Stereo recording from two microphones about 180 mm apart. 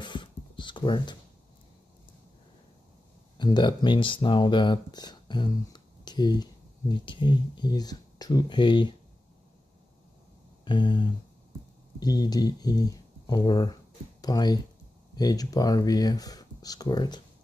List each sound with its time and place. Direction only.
0.0 s writing: 25° left (ahead or behind)
3.3 s speech: 25° left (ahead or behind)
10.6 s a sound: 25° left (ahead or behind)
12.0 s speech: 20° left (ahead or behind)